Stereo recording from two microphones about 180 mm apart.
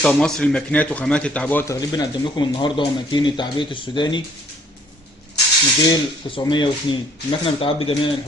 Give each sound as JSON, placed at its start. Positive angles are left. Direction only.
{"t": 0.0, "sound": "speech", "side_deg": 5}
{"t": 5.9, "sound": "speech", "side_deg": 25}